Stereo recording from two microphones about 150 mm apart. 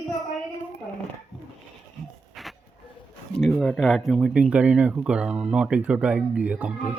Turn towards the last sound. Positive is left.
turn(degrees=-10)  # may be behind; listen again after turning